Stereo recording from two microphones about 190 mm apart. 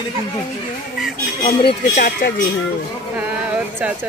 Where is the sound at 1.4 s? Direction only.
30° left (ahead or behind).